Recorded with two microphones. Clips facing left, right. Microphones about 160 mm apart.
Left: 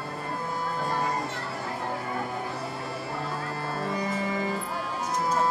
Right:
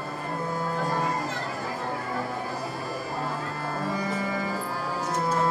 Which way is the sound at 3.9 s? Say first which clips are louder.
Even; 25° left (ahead or behind).